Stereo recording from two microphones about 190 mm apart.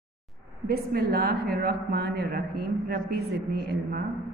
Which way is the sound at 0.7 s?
55° right (ahead or behind).